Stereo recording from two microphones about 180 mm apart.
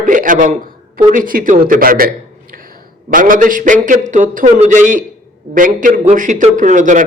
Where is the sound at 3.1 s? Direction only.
50° right (ahead or behind).